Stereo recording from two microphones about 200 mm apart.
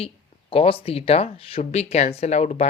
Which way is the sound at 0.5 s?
30° left (ahead or behind).